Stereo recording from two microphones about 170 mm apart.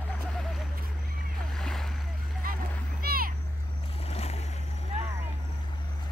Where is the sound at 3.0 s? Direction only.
60° right (ahead or behind).